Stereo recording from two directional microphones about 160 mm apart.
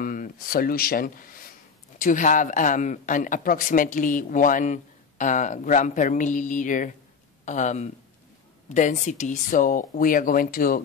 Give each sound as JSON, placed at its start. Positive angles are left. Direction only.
{"t": 0.0, "sound": "speech", "side_deg": 60}